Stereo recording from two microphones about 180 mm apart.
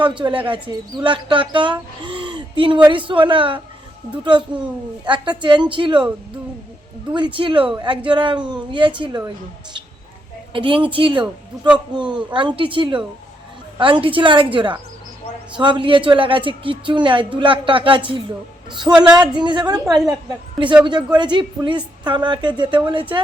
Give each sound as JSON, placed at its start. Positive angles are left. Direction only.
{"t": 0.0, "sound": "speech", "side_deg": -25}
{"t": 2.0, "sound": "a sound", "side_deg": -30}
{"t": 2.9, "sound": "speech", "side_deg": -30}
{"t": 7.3, "sound": "speech", "side_deg": -30}
{"t": 10.5, "sound": "speech", "side_deg": -30}
{"t": 20.8, "sound": "speech", "side_deg": -25}